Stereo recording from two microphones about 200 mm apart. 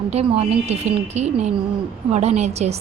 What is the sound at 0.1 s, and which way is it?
A woman's voice, 30° right (ahead or behind).